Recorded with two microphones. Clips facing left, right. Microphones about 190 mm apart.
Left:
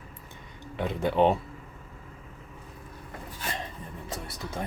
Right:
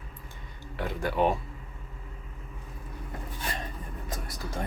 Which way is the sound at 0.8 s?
20° left (ahead or behind).